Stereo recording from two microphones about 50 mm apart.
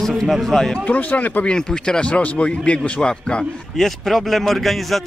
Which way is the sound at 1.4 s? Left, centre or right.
Centre.